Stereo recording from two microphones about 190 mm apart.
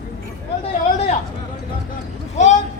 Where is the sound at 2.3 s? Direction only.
40° left (ahead or behind).